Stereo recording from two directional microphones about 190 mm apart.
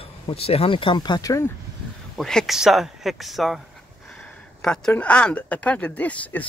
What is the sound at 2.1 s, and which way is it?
Speech, centre (ahead or behind).